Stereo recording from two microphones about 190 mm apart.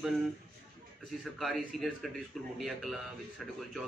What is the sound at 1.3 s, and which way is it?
Speech, centre (ahead or behind).